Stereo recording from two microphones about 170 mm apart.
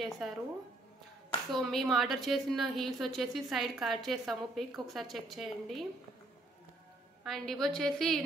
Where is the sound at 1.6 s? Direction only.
Centre (ahead or behind).